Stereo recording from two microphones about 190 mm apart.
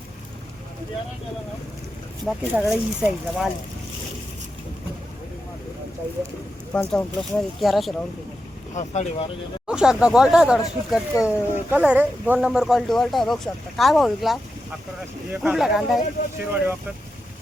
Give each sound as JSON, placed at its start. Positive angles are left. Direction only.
{"t": 2.2, "sound": "speech", "side_deg": 0}
{"t": 6.7, "sound": "speech", "side_deg": 5}
{"t": 8.7, "sound": "speech", "side_deg": 35}
{"t": 9.6, "sound": "speech", "side_deg": -5}